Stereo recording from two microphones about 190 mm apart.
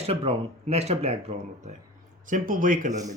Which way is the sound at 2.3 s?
45° right (ahead or behind).